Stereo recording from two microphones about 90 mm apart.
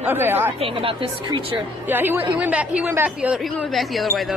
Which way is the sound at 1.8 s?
20° right (ahead or behind).